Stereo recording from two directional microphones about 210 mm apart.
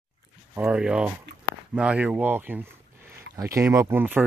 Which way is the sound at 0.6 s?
5° right (ahead or behind).